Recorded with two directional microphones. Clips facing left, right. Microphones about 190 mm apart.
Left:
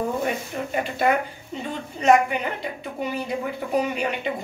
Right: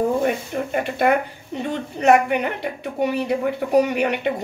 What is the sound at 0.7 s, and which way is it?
A woman's voice, 55° right (ahead or behind).